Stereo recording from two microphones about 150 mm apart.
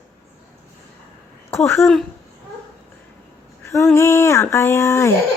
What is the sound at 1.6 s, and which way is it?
Speech, 15° left (ahead or behind).